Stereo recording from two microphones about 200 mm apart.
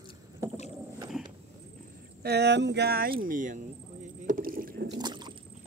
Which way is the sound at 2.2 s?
55° right (ahead or behind).